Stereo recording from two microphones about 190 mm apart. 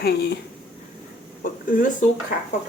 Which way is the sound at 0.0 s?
60° left (ahead or behind).